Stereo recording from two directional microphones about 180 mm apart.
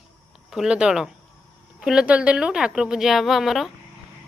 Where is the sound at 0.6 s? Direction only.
5° right (ahead or behind).